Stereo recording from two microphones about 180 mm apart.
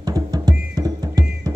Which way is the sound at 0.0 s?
20° right (ahead or behind).